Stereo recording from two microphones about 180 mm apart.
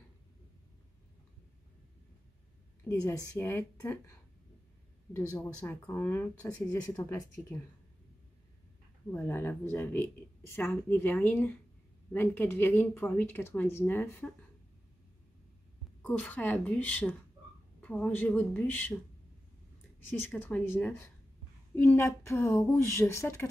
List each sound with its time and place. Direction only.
2.8 s a woman's voice: 10° left (ahead or behind)
5.1 s a woman's voice: 10° left (ahead or behind)
9.1 s a woman's voice: 10° left (ahead or behind)
16.0 s a woman's voice: 10° left (ahead or behind)
20.1 s a woman's voice: 10° left (ahead or behind)